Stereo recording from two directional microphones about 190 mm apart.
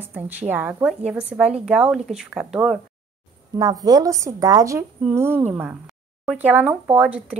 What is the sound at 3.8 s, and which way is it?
A woman's voice, 20° right (ahead or behind).